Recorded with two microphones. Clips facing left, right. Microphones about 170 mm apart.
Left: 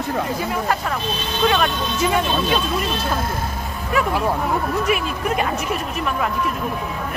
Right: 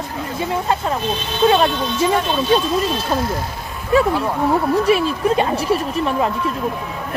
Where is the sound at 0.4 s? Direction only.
25° right (ahead or behind).